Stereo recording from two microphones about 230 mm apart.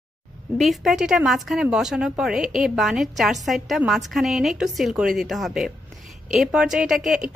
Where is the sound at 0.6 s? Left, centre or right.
Centre.